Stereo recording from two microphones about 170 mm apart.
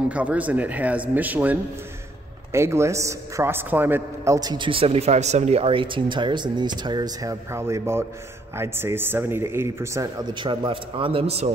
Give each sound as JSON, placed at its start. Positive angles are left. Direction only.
{"t": 0.1, "sound": "a man's voice", "side_deg": -10}
{"t": 10.4, "sound": "a man's voice", "side_deg": -30}